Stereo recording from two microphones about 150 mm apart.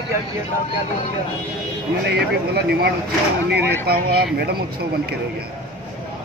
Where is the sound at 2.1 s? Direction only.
90° right.